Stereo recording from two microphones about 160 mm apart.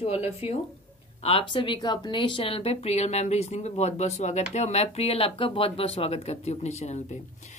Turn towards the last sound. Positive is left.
turn(degrees=45)  # may be behind; listen again after turning